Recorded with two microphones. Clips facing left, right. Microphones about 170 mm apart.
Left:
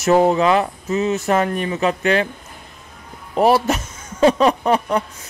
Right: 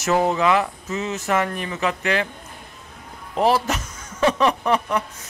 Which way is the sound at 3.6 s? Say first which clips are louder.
Left 5 dB; 30° left (ahead or behind).